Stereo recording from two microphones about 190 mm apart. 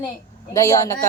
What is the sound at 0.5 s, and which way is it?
Speech, 15° left (ahead or behind).